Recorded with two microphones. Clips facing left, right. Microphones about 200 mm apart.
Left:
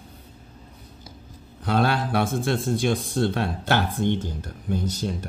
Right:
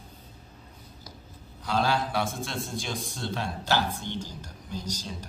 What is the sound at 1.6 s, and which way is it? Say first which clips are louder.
A man's voice: left 4 dB; 60° left (ahead or behind).